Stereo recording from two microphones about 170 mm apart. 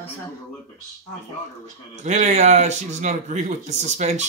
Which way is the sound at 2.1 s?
40° right (ahead or behind).